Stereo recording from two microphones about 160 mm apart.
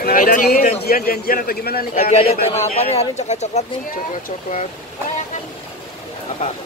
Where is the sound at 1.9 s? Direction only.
40° left (ahead or behind).